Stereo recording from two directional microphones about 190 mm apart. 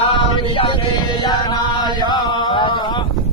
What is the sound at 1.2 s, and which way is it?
Chant, 20° left (ahead or behind).